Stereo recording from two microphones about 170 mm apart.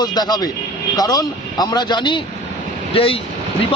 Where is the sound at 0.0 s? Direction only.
25° left (ahead or behind).